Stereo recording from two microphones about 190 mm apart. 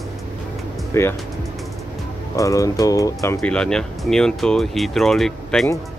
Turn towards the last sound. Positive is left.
turn(degrees=0)  # may be behind; listen again after turning